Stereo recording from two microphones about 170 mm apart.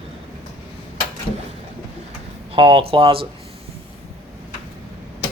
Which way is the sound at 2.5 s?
30° right (ahead or behind).